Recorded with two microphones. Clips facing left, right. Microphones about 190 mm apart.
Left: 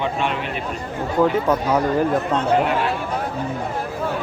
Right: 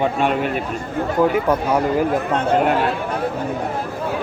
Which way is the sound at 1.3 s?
10° right (ahead or behind).